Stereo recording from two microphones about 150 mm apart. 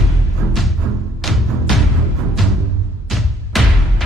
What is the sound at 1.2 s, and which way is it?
Music, centre (ahead or behind).